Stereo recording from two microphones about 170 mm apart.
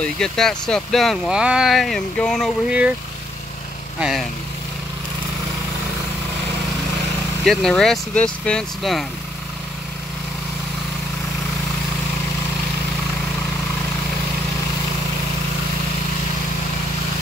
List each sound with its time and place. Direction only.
0.0 s speech: 5° left (ahead or behind)
4.0 s speech: centre (ahead or behind)
7.4 s speech: 5° left (ahead or behind)